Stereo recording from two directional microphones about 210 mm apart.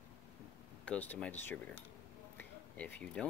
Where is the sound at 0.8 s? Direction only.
5° left (ahead or behind).